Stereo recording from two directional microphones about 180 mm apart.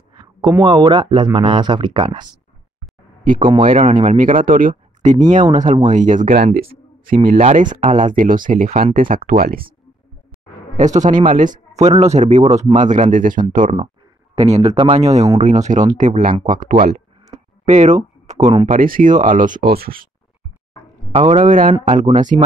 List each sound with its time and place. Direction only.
0.1 s speech: 25° right (ahead or behind)
3.6 s speech: 45° right (ahead or behind)
4.2 s speech: 50° right (ahead or behind)
7.8 s speech: 30° right (ahead or behind)
8.1 s speech: 45° right (ahead or behind)
10.8 s speech: 40° right (ahead or behind)
14.3 s speech: 35° right (ahead or behind); by 20.1 s 55° right (ahead or behind)
21.1 s speech: 35° right (ahead or behind)
21.7 s speech: 35° right (ahead or behind)